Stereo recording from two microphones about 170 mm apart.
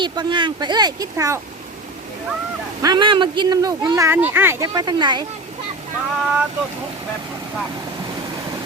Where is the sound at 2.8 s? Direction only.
25° right (ahead or behind).